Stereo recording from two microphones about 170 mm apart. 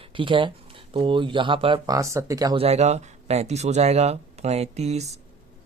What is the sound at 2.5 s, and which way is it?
Speech, 40° right (ahead or behind).